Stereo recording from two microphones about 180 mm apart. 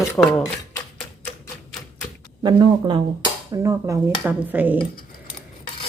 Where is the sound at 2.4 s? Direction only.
25° right (ahead or behind); by 4.8 s 10° right (ahead or behind).